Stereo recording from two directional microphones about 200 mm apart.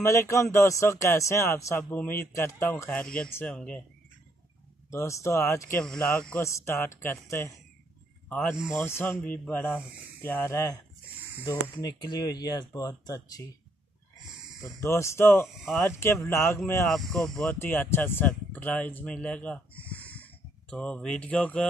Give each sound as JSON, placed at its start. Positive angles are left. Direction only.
{"t": 0.0, "sound": "speech", "side_deg": 15}
{"t": 4.9, "sound": "speech", "side_deg": 15}
{"t": 14.6, "sound": "speech", "side_deg": 15}